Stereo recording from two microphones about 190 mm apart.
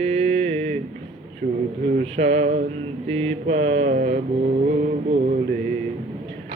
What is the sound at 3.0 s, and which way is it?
Mantra, 35° right (ahead or behind).